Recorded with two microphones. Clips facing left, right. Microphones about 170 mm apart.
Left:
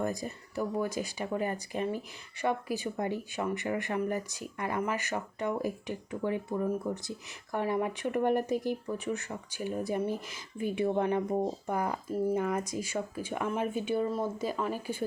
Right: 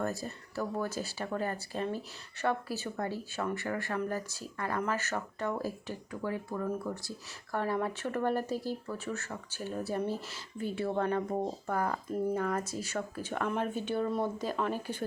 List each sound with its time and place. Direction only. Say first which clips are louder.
0.0 s speech: left 2 dB; 15° left (ahead or behind)